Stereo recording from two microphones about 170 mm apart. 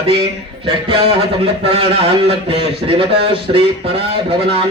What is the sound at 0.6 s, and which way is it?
Speech, 30° right (ahead or behind).